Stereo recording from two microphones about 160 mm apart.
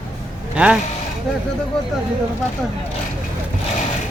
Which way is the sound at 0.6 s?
10° right (ahead or behind).